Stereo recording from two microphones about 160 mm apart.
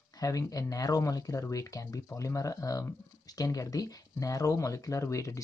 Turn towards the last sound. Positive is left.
turn(degrees=20)  # may be behind; listen again after turning